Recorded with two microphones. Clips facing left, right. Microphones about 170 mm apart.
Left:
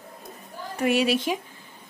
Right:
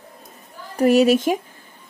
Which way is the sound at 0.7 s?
40° right (ahead or behind).